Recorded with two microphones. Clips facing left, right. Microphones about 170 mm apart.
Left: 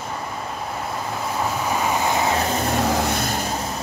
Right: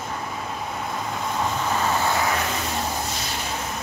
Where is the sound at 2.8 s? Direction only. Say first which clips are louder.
Left 7 dB; 80° left; by 3.6 s 45° left (ahead or behind).